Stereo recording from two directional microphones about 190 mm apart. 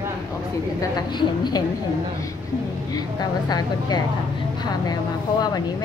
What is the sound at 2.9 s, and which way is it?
A woman's voice, 20° left (ahead or behind).